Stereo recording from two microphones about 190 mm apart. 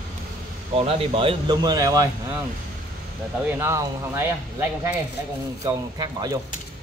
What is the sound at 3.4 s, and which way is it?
Speech, 15° right (ahead or behind).